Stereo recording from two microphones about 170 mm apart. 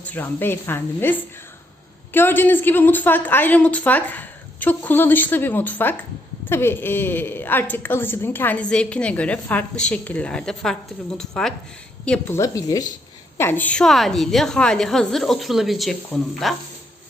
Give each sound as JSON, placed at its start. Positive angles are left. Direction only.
{"t": 0.0, "sound": "a woman's voice", "side_deg": 10}
{"t": 12.4, "sound": "a woman's voice", "side_deg": 20}